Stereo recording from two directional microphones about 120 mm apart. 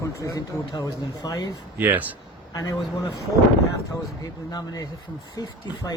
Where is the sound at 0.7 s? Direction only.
30° left (ahead or behind).